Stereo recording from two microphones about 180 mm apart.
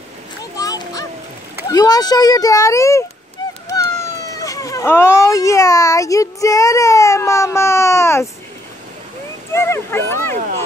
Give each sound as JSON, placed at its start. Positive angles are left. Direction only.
{"t": 0.6, "sound": "a sound", "side_deg": 20}
{"t": 1.7, "sound": "a child's voice", "side_deg": 20}
{"t": 9.5, "sound": "speech", "side_deg": 15}